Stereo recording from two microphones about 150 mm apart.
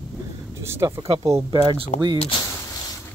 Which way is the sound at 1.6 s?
35° right (ahead or behind).